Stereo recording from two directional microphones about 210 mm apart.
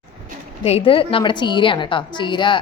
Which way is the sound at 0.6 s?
25° left (ahead or behind).